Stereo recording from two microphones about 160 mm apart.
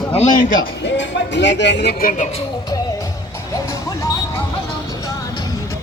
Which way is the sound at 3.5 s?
20° left (ahead or behind).